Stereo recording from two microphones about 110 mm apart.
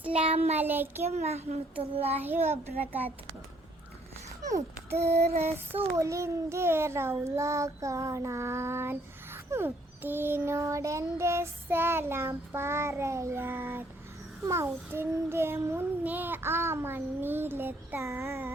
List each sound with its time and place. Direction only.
0.1 s a woman's voice: 65° right (ahead or behind)
0.6 s child singing: 20° right (ahead or behind)
1.0 s a woman's voice: 75° right (ahead or behind)
1.8 s child singing: 60° right (ahead or behind)
2.1 s a child's voice: 20° right (ahead or behind)
4.4 s a sound: 30° right (ahead or behind)
4.9 s a woman's voice: 75° right (ahead or behind)
6.0 s child singing: 25° right (ahead or behind)